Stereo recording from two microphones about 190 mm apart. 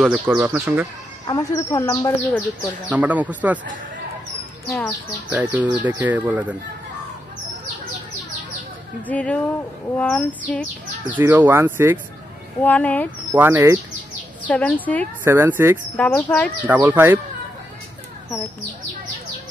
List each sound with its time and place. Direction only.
0.0 s speech: 5° right (ahead or behind)
1.2 s speech: 20° left (ahead or behind)
2.9 s speech: 10° right (ahead or behind)
5.3 s speech: 10° right (ahead or behind)
9.0 s speech: 5° left (ahead or behind)
11.1 s speech: 10° right (ahead or behind)
12.6 s speech: 10° left (ahead or behind)
13.3 s speech: 10° right (ahead or behind)
14.5 s speech: 5° left (ahead or behind)
15.2 s speech: 10° right (ahead or behind)
16.0 s speech: 10° left (ahead or behind)
16.6 s speech: 10° right (ahead or behind)